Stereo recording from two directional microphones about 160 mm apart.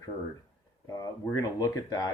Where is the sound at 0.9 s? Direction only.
25° left (ahead or behind).